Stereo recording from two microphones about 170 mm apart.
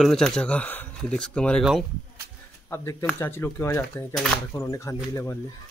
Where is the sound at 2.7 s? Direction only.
15° left (ahead or behind).